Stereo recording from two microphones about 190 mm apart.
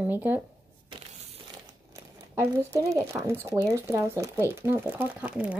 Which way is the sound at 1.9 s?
15° right (ahead or behind).